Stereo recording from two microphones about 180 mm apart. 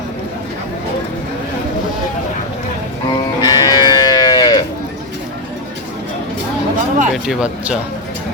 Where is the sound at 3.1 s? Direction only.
20° left (ahead or behind).